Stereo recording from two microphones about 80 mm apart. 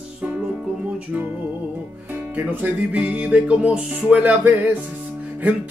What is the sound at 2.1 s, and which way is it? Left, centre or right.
Speech, right.